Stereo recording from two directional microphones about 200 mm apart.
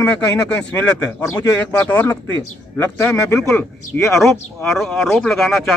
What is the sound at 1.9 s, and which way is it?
Speech, 10° left (ahead or behind).